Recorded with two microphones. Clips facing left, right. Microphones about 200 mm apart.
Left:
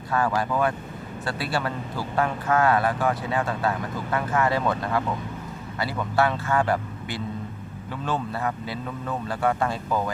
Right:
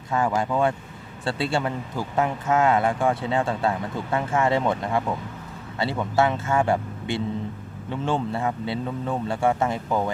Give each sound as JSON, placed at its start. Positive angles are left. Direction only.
{"t": 0.1, "sound": "speech", "side_deg": -20}